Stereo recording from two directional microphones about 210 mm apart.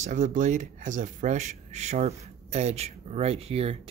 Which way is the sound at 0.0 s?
35° right (ahead or behind).